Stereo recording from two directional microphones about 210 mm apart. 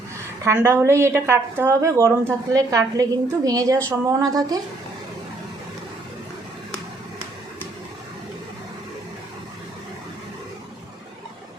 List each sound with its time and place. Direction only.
0.4 s a woman's voice: 10° right (ahead or behind)